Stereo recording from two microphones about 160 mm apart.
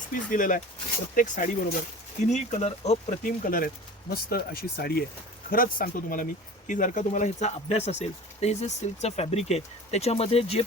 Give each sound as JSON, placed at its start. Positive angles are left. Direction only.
{"t": 0.1, "sound": "speech", "side_deg": 60}
{"t": 4.1, "sound": "speech", "side_deg": 70}
{"t": 5.5, "sound": "speech", "side_deg": 65}